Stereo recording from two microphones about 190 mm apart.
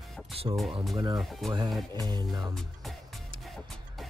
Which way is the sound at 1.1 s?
Centre (ahead or behind).